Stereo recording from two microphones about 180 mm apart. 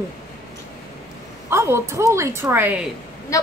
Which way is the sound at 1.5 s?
15° right (ahead or behind).